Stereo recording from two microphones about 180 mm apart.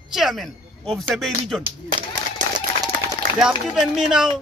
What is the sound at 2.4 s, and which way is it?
Run, 45° right (ahead or behind).